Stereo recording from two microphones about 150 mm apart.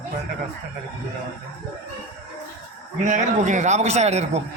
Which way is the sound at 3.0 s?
55° right (ahead or behind).